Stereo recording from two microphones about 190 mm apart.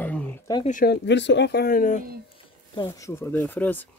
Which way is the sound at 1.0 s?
65° left (ahead or behind).